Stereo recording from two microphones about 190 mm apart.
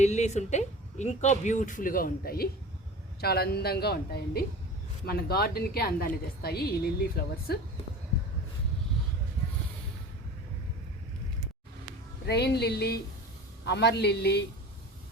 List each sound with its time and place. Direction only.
0.0 s a woman's voice: 35° left (ahead or behind); by 7.6 s 55° left (ahead or behind)
12.2 s a woman's voice: 60° left (ahead or behind)